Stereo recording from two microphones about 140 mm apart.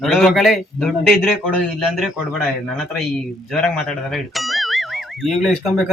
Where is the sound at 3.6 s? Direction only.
5° left (ahead or behind).